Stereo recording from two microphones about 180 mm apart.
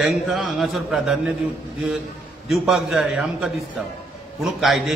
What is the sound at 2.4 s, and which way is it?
A man's voice, centre (ahead or behind).